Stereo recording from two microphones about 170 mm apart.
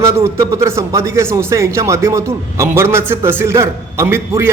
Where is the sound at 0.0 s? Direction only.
15° right (ahead or behind).